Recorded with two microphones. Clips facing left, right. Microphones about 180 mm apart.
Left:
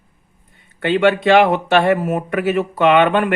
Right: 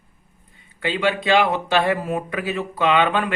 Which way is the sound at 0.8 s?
60° left (ahead or behind).